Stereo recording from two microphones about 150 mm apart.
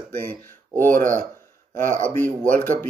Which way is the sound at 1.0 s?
60° right (ahead or behind).